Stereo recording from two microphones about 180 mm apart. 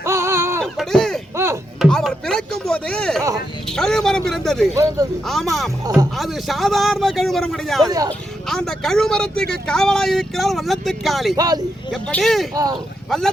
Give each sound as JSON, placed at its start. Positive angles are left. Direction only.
{"t": 0.0, "sound": "a sound", "side_deg": -15}
{"t": 0.6, "sound": "a sound", "side_deg": 0}
{"t": 1.8, "sound": "chopping", "side_deg": 0}
{"t": 3.7, "sound": "speech", "side_deg": 5}
{"t": 4.7, "sound": "speech", "side_deg": -15}
{"t": 5.2, "sound": "speech", "side_deg": 0}
{"t": 7.9, "sound": "speech", "side_deg": -20}
{"t": 8.4, "sound": "speech", "side_deg": 0}
{"t": 11.3, "sound": "speech", "side_deg": -20}
{"t": 11.9, "sound": "speech", "side_deg": 0}